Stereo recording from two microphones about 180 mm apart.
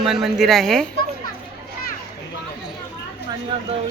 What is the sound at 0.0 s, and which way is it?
Speech, centre (ahead or behind).